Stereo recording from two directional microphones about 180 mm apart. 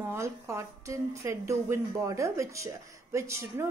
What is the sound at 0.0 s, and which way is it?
A woman's voice, 15° right (ahead or behind).